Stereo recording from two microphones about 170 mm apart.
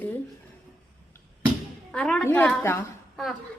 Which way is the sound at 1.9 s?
5° left (ahead or behind).